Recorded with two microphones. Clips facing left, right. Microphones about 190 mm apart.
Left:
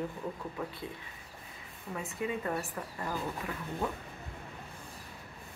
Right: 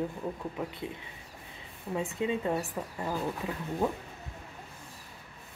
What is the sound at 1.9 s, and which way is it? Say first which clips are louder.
A woman's voice: right 5 dB; 25° right (ahead or behind).